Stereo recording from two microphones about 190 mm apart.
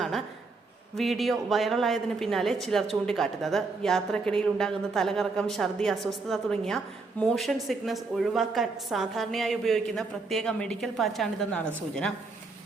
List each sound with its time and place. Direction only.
0.9 s a woman's voice: centre (ahead or behind)